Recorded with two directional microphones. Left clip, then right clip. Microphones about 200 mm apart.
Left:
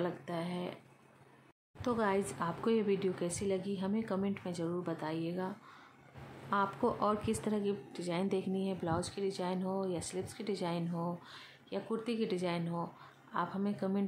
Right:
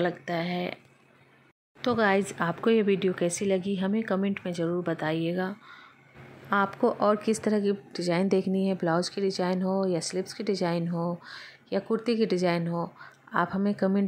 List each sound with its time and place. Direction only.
0.0 s speech: 15° right (ahead or behind)
1.8 s a woman's voice: 20° right (ahead or behind)
6.5 s a woman's voice: 25° right (ahead or behind)